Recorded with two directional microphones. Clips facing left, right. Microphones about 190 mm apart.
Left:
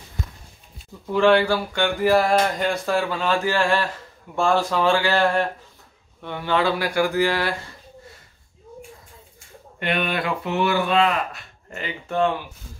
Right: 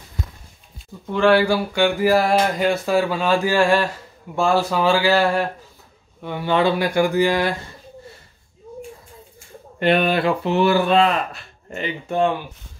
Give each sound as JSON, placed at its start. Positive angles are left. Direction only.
{"t": 1.1, "sound": "speech", "side_deg": 0}
{"t": 9.8, "sound": "speech", "side_deg": -35}
{"t": 11.8, "sound": "speech", "side_deg": -15}